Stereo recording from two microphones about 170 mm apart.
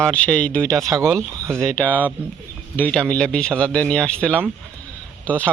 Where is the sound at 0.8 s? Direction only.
20° right (ahead or behind).